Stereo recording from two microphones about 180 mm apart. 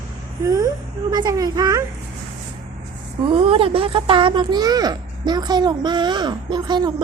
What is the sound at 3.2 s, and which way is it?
Speech, 30° right (ahead or behind).